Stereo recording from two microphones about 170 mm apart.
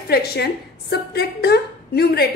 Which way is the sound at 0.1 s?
70° left (ahead or behind).